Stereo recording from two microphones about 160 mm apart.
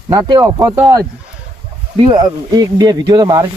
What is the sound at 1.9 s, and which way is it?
Speech, 30° right (ahead or behind).